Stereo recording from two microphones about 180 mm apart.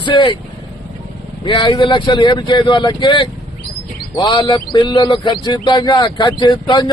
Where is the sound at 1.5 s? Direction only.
25° left (ahead or behind).